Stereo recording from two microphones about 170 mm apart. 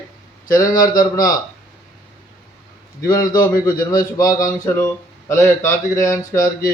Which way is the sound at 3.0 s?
20° left (ahead or behind).